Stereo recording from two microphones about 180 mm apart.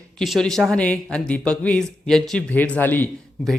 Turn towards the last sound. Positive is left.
turn(degrees=5)  # may be behind; listen again after turning